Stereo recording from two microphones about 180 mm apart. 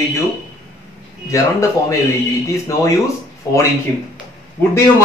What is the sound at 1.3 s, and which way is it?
Speech, 15° left (ahead or behind).